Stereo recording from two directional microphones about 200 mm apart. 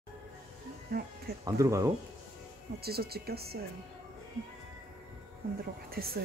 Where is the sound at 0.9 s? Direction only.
50° right (ahead or behind).